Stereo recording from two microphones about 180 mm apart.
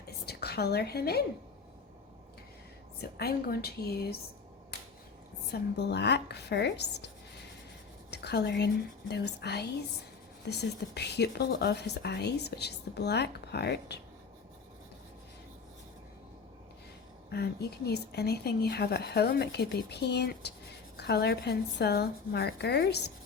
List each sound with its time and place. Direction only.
0.3 s a woman's voice: 65° left (ahead or behind)
3.0 s speech: 60° left (ahead or behind)
4.7 s finger snapping: 65° left (ahead or behind)
5.5 s speech: 65° left (ahead or behind)
8.1 s speech: 65° left (ahead or behind)
17.3 s speech: 65° left (ahead or behind)